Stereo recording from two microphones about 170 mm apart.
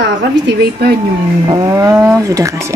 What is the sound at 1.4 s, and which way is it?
Speech, 20° right (ahead or behind).